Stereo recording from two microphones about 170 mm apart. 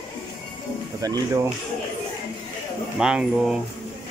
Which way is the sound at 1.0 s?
20° right (ahead or behind).